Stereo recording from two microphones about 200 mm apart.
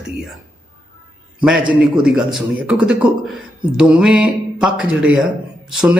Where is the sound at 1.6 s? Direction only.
25° right (ahead or behind).